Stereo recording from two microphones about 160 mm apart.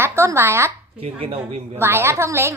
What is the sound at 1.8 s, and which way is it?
Speech, 15° right (ahead or behind).